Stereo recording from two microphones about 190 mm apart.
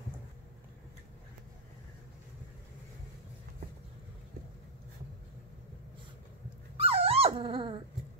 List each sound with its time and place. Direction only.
6.8 s dog: 30° right (ahead or behind)